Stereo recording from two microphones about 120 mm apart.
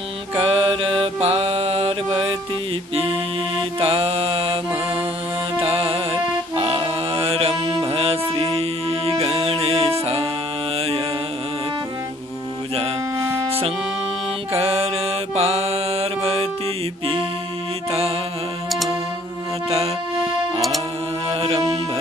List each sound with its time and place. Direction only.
0.4 s mantra: 50° right (ahead or behind)
3.5 s mantra: 50° right (ahead or behind)
5.7 s music: 50° right (ahead or behind)
13.5 s music: 50° right (ahead or behind)
14.5 s mantra: 55° right (ahead or behind)
17.0 s music: 50° right (ahead or behind)
21.3 s music: 55° right (ahead or behind)